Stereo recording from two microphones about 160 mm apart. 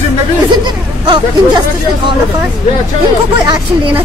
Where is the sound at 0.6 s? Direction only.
30° right (ahead or behind).